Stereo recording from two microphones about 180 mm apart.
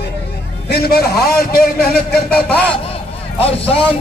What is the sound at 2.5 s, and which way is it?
Speech, 5° left (ahead or behind).